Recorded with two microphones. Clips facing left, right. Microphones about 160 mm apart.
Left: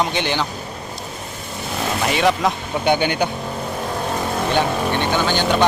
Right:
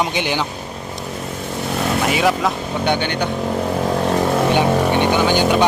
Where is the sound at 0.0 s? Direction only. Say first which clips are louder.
Right 1 dB; 10° right (ahead or behind).